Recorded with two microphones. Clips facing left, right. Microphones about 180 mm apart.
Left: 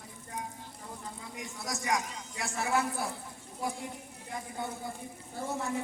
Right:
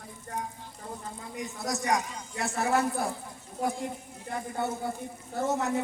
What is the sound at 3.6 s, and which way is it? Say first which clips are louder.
A woman's voice: right 6 dB; 60° right (ahead or behind).